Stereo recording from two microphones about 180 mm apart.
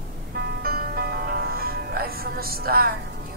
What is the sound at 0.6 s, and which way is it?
Music, 55° right (ahead or behind).